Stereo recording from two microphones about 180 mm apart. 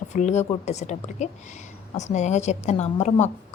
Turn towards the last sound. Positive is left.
turn(degrees=40)  # may be behind; listen again after turning